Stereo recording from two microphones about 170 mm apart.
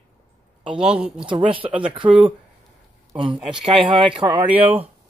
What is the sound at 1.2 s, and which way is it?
Speech, 30° right (ahead or behind).